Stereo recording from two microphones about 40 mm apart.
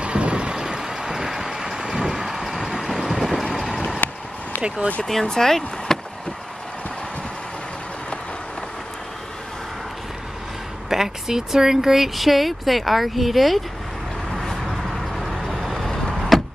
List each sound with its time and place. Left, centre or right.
0.0 s vehicle: right; by 3.8 s centre
4.0 s a sound: left
4.6 s speech: right
5.0 s speech: centre
10.9 s speech: centre
14.4 s vehicle: centre